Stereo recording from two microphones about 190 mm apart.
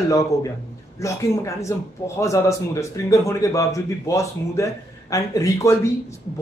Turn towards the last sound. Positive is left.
turn(degrees=15)  # may be behind; listen again after turning